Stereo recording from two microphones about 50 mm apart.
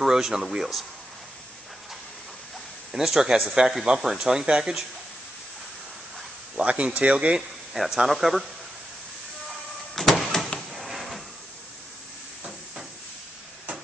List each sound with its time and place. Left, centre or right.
0.0 s speech: centre
2.9 s speech: centre
6.5 s speech: right
7.7 s speech: centre
9.9 s a sound: centre